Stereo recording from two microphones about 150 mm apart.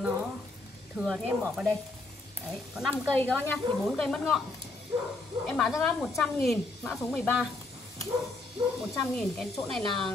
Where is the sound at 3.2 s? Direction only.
5° left (ahead or behind).